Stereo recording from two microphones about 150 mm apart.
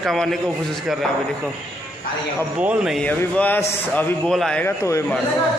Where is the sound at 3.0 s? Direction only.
10° left (ahead or behind).